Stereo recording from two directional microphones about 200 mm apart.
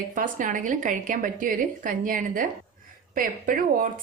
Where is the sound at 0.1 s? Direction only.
40° right (ahead or behind).